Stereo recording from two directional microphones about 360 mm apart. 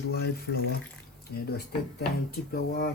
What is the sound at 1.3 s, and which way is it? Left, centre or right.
Speech, left.